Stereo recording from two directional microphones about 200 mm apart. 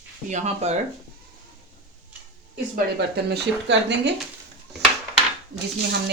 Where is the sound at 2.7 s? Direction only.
55° right (ahead or behind).